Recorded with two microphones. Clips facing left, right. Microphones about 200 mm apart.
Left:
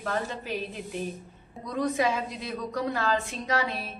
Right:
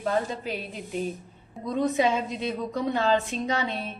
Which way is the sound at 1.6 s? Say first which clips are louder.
Right 3 dB; 25° right (ahead or behind).